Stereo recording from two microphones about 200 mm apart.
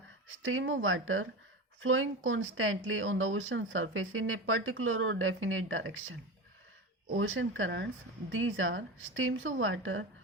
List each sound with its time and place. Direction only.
0.4 s speech: 80° right
7.2 s a woman's voice: 75° right (ahead or behind)
8.3 s a woman's voice: 80° right